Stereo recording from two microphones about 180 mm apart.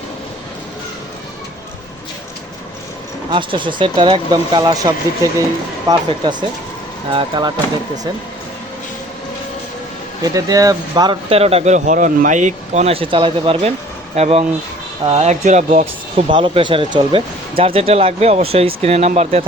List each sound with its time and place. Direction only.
3.2 s speech: 25° right (ahead or behind)
7.1 s speech: 25° right (ahead or behind)
10.3 s speech: 20° right (ahead or behind); by 16.2 s 40° right (ahead or behind)
16.3 s speech: 30° right (ahead or behind)